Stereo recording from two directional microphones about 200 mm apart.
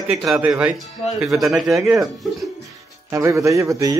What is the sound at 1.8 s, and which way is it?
Mantra, 15° right (ahead or behind).